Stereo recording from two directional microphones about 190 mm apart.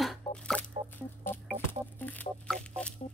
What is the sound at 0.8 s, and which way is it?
Rodents, 35° right (ahead or behind).